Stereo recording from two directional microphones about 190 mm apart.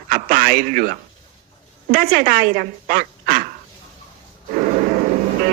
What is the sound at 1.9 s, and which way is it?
Speech, 45° right (ahead or behind).